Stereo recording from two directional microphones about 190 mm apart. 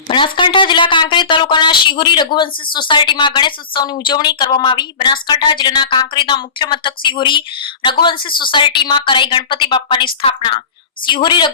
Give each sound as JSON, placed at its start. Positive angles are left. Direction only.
{"t": 0.1, "sound": "speech", "side_deg": 25}